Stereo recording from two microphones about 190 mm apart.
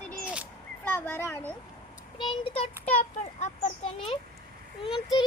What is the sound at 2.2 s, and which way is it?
Speech, 25° left (ahead or behind).